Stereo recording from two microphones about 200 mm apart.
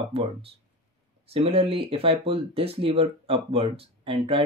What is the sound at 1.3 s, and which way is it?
Speech, 30° right (ahead or behind).